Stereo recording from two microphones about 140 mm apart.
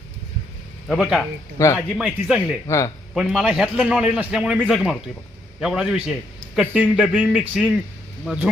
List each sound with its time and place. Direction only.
0.9 s a man's voice: centre (ahead or behind)
1.5 s speech: 20° left (ahead or behind)
1.9 s a man's voice: 5° right (ahead or behind)
2.6 s speech: 20° left (ahead or behind)
3.2 s a man's voice: 5° right (ahead or behind)